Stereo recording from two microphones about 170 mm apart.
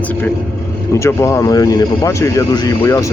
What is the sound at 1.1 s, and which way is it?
Speech, 15° left (ahead or behind).